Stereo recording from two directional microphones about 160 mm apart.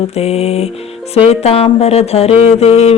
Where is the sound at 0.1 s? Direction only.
40° left (ahead or behind).